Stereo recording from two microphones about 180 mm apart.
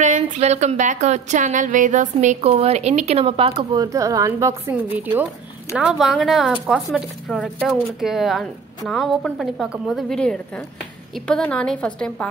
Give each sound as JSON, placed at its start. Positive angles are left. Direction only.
{"t": 0.0, "sound": "a woman's voice", "side_deg": -40}